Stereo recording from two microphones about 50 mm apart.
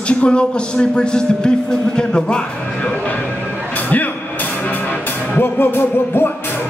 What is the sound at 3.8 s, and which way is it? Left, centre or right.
Music, left.